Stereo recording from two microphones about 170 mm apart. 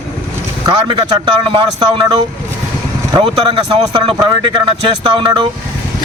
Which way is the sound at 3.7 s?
30° right (ahead or behind).